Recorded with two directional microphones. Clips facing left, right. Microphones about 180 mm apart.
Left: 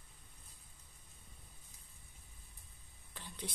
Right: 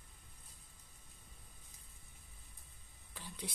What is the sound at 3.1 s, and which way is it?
Whispering, 10° right (ahead or behind).